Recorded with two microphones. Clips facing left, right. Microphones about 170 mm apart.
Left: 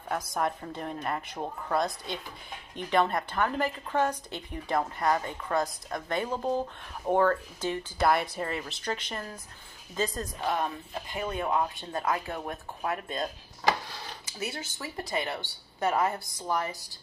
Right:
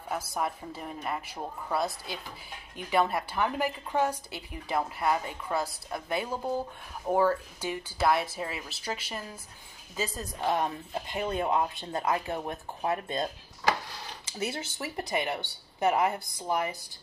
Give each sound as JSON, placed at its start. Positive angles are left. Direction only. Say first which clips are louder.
{"t": 0.1, "sound": "a woman's voice", "louder": "left 2 dB", "side_deg": -5}
{"t": 10.5, "sound": "a woman's voice", "louder": "right 2 dB", "side_deg": -20}